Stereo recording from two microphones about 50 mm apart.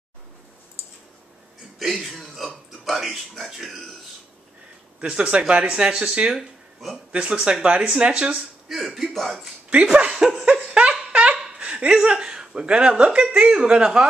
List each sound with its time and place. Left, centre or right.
1.8 s a man's voice: centre
5.0 s speech: right
6.3 s speech: centre
7.1 s speech: centre
8.6 s a man's voice: centre
9.7 s speech: right
10.4 s laughter: right
13.3 s speech: centre